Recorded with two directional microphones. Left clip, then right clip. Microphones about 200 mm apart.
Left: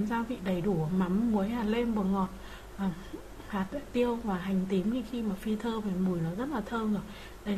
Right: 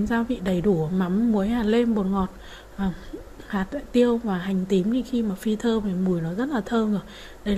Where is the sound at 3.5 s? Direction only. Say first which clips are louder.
Right 6 dB; 30° right (ahead or behind).